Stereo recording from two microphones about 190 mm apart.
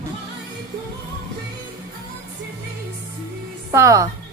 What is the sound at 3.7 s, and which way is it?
Speech, 15° right (ahead or behind).